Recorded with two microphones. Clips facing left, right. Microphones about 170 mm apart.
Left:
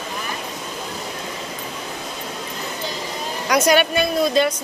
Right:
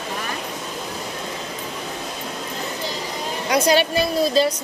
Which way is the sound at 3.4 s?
30° right (ahead or behind).